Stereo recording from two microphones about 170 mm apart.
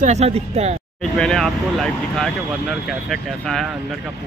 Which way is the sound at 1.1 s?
Centre (ahead or behind).